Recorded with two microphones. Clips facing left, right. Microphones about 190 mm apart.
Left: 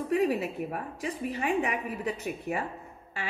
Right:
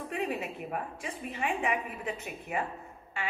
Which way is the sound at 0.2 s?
35° left (ahead or behind).